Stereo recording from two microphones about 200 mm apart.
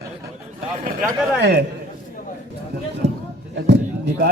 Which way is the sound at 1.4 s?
55° right (ahead or behind).